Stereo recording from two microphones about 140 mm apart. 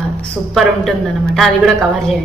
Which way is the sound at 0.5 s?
Centre (ahead or behind).